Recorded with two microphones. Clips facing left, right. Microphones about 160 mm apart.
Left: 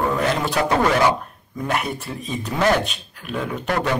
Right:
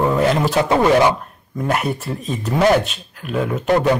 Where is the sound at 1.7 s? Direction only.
Centre (ahead or behind).